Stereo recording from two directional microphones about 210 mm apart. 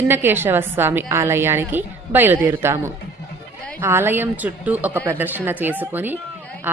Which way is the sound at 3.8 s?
10° right (ahead or behind).